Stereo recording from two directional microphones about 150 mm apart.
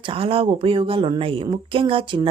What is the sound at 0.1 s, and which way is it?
Speech, 40° right (ahead or behind).